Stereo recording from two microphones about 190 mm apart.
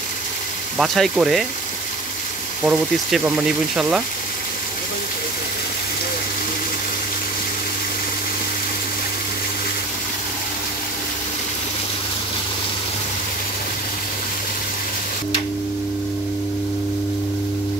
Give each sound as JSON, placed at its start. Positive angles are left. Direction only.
{"t": 0.7, "sound": "speech", "side_deg": 0}
{"t": 2.6, "sound": "speech", "side_deg": -5}